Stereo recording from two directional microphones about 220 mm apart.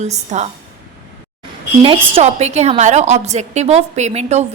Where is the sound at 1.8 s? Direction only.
25° right (ahead or behind).